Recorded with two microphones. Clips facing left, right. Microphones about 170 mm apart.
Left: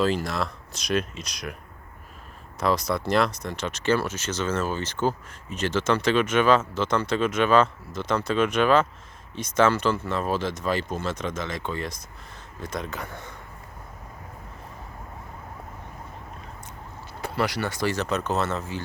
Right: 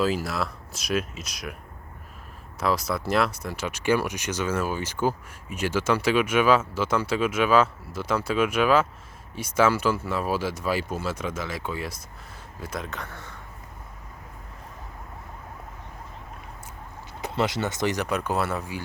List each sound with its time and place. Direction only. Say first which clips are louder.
0.0 s speech: left 1 dB; 5° right (ahead or behind)
2.6 s speech: left 1 dB; 5° right (ahead or behind)
13.0 s speech: left 2 dB; 15° left (ahead or behind)
17.2 s speech: right 1 dB; 20° right (ahead or behind)